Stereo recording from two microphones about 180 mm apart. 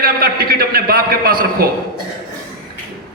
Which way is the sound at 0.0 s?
55° right (ahead or behind).